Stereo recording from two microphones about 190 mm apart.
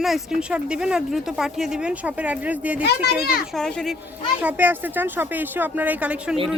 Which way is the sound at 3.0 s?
55° left (ahead or behind).